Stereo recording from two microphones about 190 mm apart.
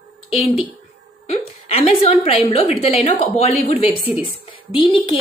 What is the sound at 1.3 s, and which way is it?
A woman's voice, 30° left (ahead or behind).